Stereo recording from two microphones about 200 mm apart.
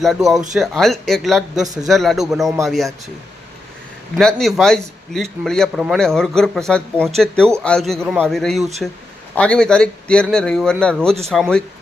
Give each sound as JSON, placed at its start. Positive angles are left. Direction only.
{"t": 0.0, "sound": "a man's voice", "side_deg": 0}
{"t": 1.6, "sound": "a man's voice", "side_deg": -20}
{"t": 1.9, "sound": "a man's voice", "side_deg": 0}
{"t": 4.2, "sound": "a man's voice", "side_deg": 5}